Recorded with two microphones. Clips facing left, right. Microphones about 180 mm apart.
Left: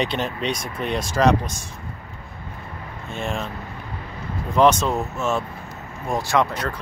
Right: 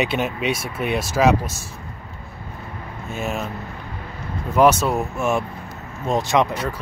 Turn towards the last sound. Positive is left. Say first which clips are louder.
# right 2 dB
turn(degrees=-20)  # may be behind; listen again after turning